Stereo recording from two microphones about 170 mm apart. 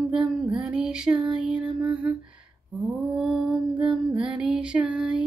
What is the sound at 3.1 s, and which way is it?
Lullaby, 5° right (ahead or behind).